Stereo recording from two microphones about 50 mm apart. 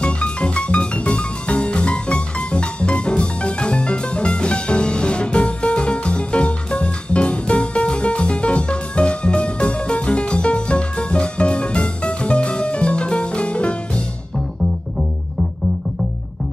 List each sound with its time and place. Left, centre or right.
0.0 s music: left